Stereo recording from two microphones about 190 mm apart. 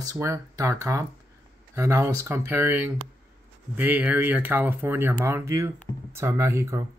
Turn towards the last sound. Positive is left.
turn(degrees=-15)  # may be behind; listen again after turning